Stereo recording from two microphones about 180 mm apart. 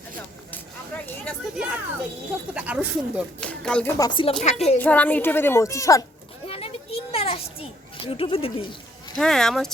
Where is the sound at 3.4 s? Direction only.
5° left (ahead or behind).